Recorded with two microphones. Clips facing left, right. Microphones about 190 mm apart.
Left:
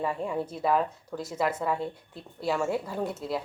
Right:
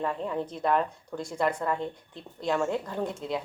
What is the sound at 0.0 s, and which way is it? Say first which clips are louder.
A woman's voice: even; 10° left (ahead or behind).